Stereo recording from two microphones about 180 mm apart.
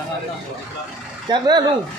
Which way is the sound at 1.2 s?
25° right (ahead or behind).